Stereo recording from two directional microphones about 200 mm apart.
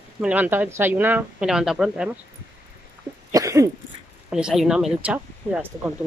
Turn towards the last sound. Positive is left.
turn(degrees=-5)  # may be behind; listen again after turning